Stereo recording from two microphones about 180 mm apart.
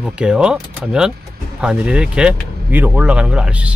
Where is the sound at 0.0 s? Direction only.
5° right (ahead or behind).